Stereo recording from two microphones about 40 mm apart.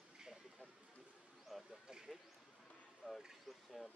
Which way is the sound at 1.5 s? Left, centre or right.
Centre.